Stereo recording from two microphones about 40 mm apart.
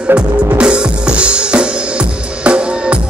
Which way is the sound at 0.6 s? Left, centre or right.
Right.